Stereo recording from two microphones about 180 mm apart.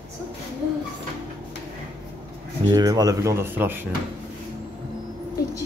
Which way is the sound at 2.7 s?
20° right (ahead or behind).